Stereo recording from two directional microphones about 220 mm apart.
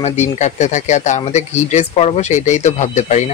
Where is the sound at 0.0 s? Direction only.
30° left (ahead or behind).